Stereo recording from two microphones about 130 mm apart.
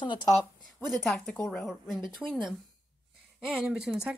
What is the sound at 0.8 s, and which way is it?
Speech, centre (ahead or behind).